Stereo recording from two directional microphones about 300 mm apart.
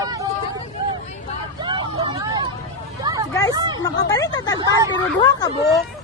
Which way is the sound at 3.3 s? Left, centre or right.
Centre.